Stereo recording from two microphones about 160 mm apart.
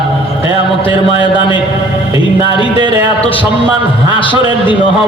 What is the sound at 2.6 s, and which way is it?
A man's voice, 35° left (ahead or behind).